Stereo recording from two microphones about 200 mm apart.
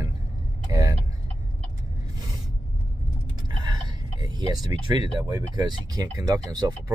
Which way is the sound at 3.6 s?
20° right (ahead or behind).